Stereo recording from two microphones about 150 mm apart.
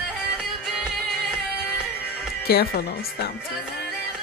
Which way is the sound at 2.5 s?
90° left.